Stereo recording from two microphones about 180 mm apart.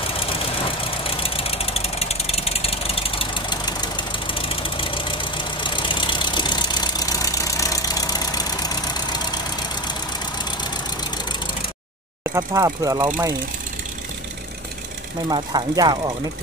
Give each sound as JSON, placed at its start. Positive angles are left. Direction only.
{"t": 1.0, "sound": "vehicle", "side_deg": 30}
{"t": 12.2, "sound": "speech", "side_deg": -20}
{"t": 15.2, "sound": "speech", "side_deg": -25}